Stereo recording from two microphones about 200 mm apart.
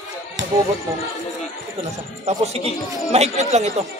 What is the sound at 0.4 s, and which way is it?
Music, 65° right (ahead or behind).